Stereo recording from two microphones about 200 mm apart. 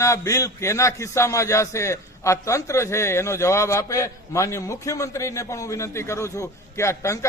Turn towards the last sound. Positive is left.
turn(degrees=15)  # may be behind; listen again after turning